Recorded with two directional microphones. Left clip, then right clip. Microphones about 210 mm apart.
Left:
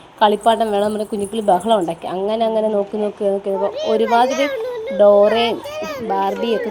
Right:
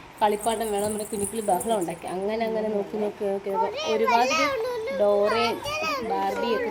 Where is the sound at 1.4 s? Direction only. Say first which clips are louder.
Left 10 dB; 25° left (ahead or behind).